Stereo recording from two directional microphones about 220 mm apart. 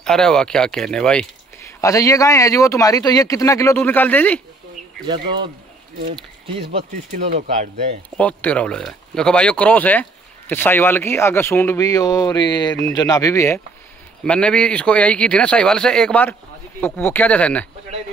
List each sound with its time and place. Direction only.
0.0 s speech: 5° left (ahead or behind)
1.8 s speech: 15° left (ahead or behind)
5.0 s speech: 20° right (ahead or behind)
6.7 s speech: 35° right (ahead or behind)
8.2 s speech: 5° left (ahead or behind)